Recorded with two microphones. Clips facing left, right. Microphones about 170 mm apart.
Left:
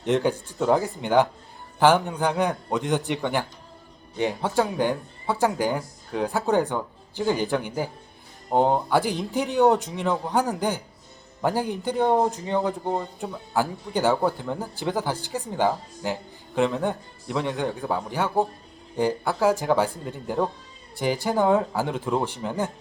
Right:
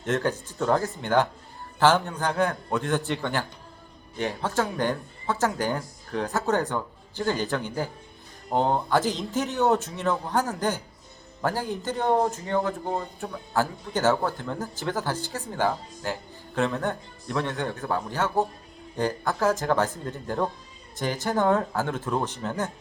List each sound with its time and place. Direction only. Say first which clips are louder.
0.0 s speech: left 4 dB; 15° left (ahead or behind)